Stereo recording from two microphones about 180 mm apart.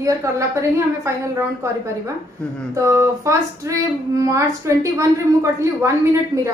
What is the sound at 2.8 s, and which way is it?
A woman's voice, 15° right (ahead or behind).